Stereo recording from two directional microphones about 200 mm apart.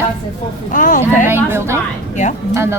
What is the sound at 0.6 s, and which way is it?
Speech, 40° left (ahead or behind).